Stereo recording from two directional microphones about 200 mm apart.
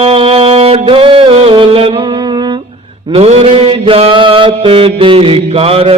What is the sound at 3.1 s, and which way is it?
Mantra, 30° right (ahead or behind).